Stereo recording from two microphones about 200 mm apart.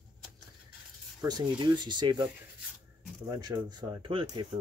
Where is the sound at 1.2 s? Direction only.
20° right (ahead or behind).